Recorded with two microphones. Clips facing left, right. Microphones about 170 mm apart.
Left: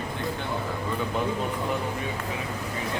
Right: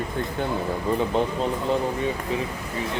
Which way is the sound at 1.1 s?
30° right (ahead or behind).